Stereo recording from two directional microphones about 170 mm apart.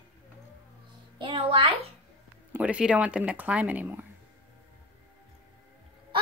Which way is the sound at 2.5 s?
5° right (ahead or behind).